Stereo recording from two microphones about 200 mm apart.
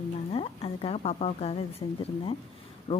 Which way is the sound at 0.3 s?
30° left (ahead or behind).